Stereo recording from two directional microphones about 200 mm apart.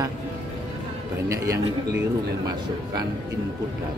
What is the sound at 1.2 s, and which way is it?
Speech, 15° right (ahead or behind).